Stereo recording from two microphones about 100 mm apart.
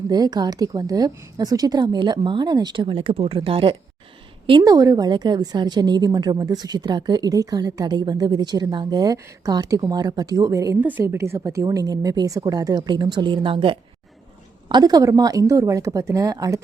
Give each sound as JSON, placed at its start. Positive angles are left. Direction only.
{"t": 0.1, "sound": "a woman's voice", "side_deg": -45}
{"t": 2.8, "sound": "speech", "side_deg": -65}
{"t": 4.6, "sound": "a woman's voice", "side_deg": -35}
{"t": 10.8, "sound": "a woman's voice", "side_deg": -20}
{"t": 14.7, "sound": "a woman's voice", "side_deg": -40}